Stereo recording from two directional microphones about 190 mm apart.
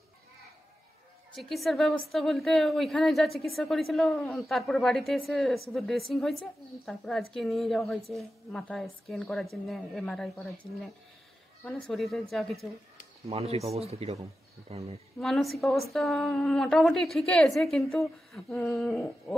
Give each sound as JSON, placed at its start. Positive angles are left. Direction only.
{"t": 1.3, "sound": "a woman's voice", "side_deg": 0}
{"t": 13.3, "sound": "speech", "side_deg": -30}
{"t": 15.1, "sound": "a woman's voice", "side_deg": 0}